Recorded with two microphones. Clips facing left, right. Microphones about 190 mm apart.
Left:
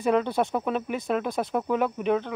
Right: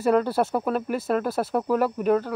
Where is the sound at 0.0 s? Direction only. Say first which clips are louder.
Right 2 dB; 5° right (ahead or behind).